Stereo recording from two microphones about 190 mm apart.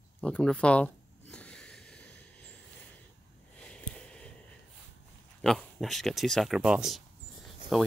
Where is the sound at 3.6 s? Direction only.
5° left (ahead or behind).